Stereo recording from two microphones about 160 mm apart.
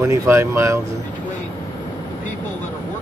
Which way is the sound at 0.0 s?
15° right (ahead or behind).